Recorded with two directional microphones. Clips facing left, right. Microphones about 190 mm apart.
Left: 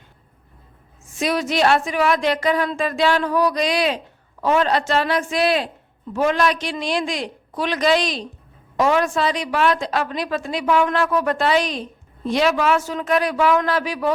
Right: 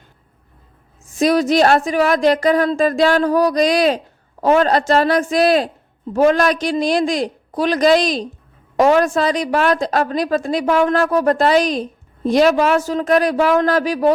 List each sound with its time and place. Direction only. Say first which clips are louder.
1.1 s speech: right 7 dB; 40° right (ahead or behind)